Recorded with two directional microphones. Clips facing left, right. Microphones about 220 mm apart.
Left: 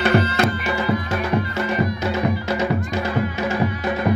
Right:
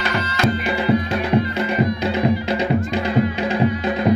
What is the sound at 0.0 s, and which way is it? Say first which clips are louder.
Music: left 5 dB; 55° left (ahead or behind).